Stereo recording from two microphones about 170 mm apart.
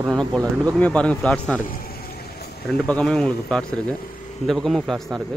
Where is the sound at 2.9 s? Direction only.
Centre (ahead or behind).